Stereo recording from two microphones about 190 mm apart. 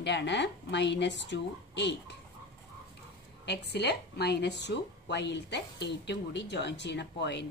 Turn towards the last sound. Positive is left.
turn(degrees=65)  # may be behind; listen again after turning